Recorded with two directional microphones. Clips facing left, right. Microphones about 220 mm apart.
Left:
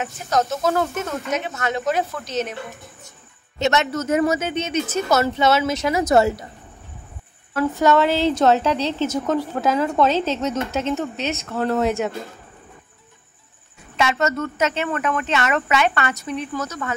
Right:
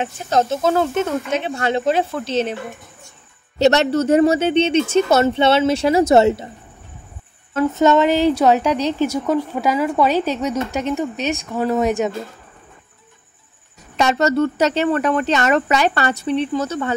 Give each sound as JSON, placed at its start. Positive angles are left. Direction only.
{"t": 0.0, "sound": "speech", "side_deg": -30}
{"t": 3.5, "sound": "speech", "side_deg": -35}
{"t": 7.5, "sound": "a woman's voice", "side_deg": -20}
{"t": 13.9, "sound": "speech", "side_deg": -35}